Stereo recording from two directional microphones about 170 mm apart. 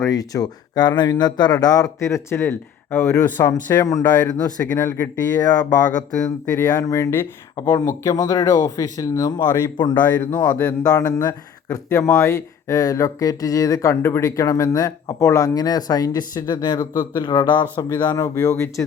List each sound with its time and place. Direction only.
0.0 s speech: 20° left (ahead or behind)
6.5 s speech: 10° left (ahead or behind)
9.9 s speech: 10° left (ahead or behind)
10.8 s speech: 20° left (ahead or behind)